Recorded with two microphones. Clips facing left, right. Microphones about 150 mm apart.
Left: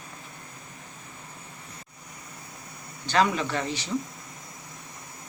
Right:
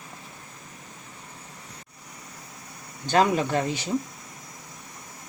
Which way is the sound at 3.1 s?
45° right (ahead or behind).